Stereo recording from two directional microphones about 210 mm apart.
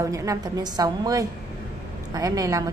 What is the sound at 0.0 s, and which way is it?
A woman's voice, 15° right (ahead or behind).